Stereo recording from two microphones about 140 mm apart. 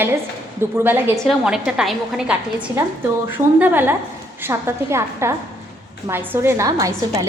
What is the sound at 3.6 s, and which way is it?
A woman's voice, 15° right (ahead or behind).